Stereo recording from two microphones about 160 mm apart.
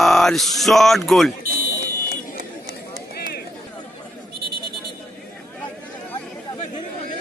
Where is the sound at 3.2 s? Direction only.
75° left (ahead or behind).